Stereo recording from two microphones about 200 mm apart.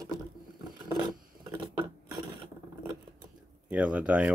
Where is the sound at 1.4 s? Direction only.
20° right (ahead or behind).